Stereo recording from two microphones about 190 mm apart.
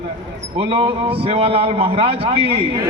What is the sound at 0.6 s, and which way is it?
A man's voice, 25° right (ahead or behind).